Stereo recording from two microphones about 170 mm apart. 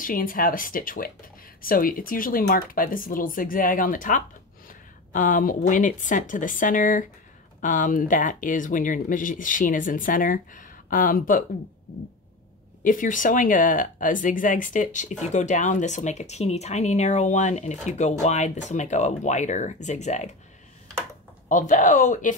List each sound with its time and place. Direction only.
0.0 s speech: 55° left (ahead or behind)
12.8 s speech: 50° left (ahead or behind)
21.5 s speech: 50° left (ahead or behind)